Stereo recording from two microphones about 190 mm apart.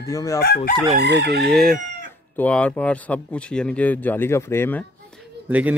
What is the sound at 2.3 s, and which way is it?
A man's voice, 5° left (ahead or behind).